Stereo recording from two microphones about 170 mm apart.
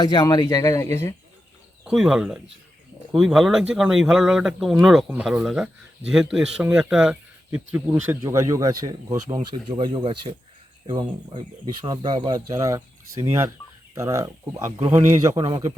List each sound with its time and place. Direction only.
0.0 s speech: 25° left (ahead or behind)
1.8 s speech: 5° right (ahead or behind)
15.4 s speech: 30° right (ahead or behind)